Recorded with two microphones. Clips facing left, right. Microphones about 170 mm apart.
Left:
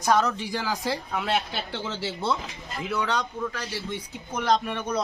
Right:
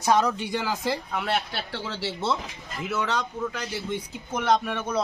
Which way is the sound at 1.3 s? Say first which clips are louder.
Left 1 dB; 15° left (ahead or behind).